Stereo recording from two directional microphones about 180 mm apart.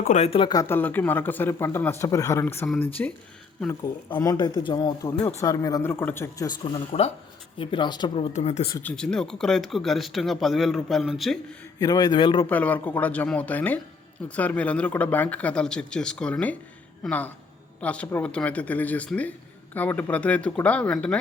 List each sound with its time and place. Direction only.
0.0 s speech: 40° left (ahead or behind); by 3.1 s 10° left (ahead or behind)
4.1 s speech: 25° left (ahead or behind)
6.7 s speech: 35° left (ahead or behind)
8.3 s speech: 40° left (ahead or behind)
8.6 s speech: 20° left (ahead or behind)
8.9 s speech: 5° left (ahead or behind)
11.8 s speech: 20° left (ahead or behind)
12.5 s speech: 10° left (ahead or behind)